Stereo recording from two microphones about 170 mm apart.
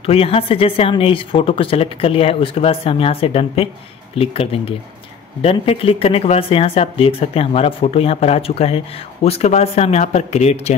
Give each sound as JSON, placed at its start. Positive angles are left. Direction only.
{"t": 0.0, "sound": "speech", "side_deg": 35}